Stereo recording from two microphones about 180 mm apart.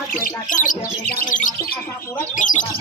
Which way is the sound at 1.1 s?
50° left (ahead or behind).